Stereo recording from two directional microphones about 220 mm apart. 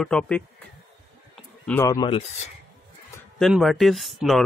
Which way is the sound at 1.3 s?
5° left (ahead or behind).